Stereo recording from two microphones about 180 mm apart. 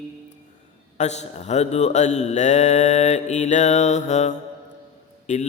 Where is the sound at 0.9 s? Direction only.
40° left (ahead or behind).